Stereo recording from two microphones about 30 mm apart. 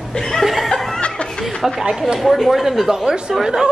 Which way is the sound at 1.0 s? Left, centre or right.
Left.